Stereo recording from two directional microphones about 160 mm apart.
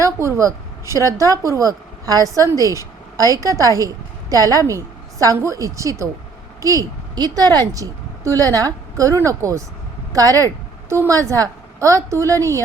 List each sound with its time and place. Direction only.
0.0 s a woman's voice: 20° right (ahead or behind)